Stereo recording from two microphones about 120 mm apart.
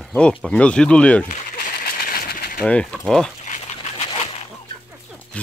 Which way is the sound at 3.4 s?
70° left (ahead or behind).